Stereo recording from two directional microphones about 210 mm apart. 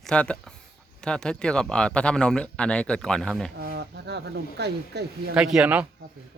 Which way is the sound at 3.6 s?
50° right (ahead or behind).